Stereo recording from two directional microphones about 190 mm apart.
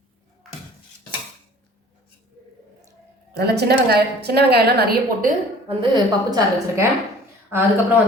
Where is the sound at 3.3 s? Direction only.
60° right (ahead or behind).